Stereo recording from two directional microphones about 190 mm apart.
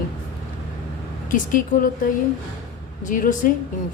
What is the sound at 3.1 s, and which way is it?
Speech, 45° left (ahead or behind).